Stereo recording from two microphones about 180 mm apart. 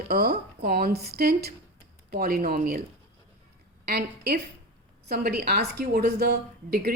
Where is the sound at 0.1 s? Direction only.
55° right (ahead or behind).